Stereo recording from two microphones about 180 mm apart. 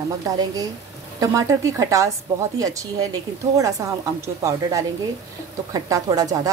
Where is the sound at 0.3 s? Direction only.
20° right (ahead or behind).